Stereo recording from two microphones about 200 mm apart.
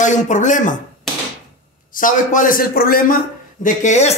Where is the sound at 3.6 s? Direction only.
35° left (ahead or behind).